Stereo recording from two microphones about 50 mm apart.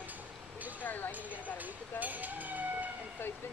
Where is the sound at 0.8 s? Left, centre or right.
Left.